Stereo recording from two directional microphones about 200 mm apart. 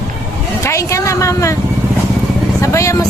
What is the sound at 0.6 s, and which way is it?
Speech, 15° left (ahead or behind).